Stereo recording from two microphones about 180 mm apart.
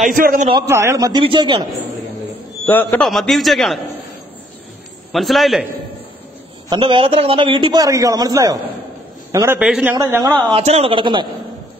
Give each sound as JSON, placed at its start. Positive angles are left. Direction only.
{"t": 0.0, "sound": "a man's voice", "side_deg": -50}
{"t": 0.7, "sound": "a man's voice", "side_deg": -15}
{"t": 2.6, "sound": "a man's voice", "side_deg": 10}
{"t": 5.1, "sound": "a man's voice", "side_deg": 0}
{"t": 6.7, "sound": "a man's voice", "side_deg": -25}
{"t": 9.9, "sound": "a man's voice", "side_deg": -15}
{"t": 10.5, "sound": "speech", "side_deg": -35}